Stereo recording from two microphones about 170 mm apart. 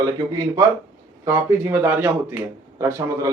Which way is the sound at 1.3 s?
10° right (ahead or behind).